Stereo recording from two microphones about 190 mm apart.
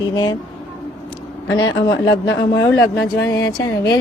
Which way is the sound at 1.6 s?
20° left (ahead or behind).